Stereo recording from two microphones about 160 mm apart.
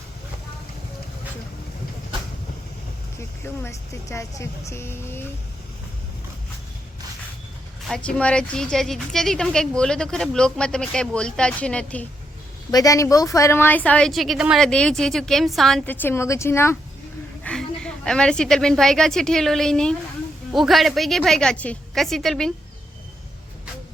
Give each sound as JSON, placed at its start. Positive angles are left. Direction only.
{"t": 3.2, "sound": "speech", "side_deg": 15}
{"t": 7.9, "sound": "a woman's voice", "side_deg": 5}
{"t": 12.7, "sound": "a woman's voice", "side_deg": 20}
{"t": 16.0, "sound": "speech", "side_deg": 15}
{"t": 17.4, "sound": "a woman's voice", "side_deg": 5}